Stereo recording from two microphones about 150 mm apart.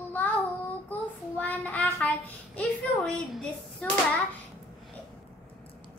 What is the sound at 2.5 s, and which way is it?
Speech, 5° left (ahead or behind).